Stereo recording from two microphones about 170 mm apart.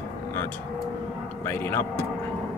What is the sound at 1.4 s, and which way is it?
Speech, 15° left (ahead or behind).